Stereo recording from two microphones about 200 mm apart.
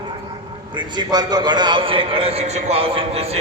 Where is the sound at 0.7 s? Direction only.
20° right (ahead or behind).